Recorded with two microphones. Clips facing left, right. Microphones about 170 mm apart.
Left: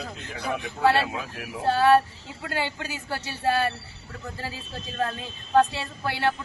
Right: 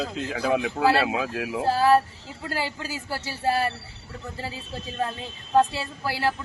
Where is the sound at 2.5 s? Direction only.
35° right (ahead or behind).